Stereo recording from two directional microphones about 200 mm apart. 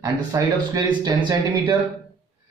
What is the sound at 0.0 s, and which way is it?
Speech, 15° right (ahead or behind).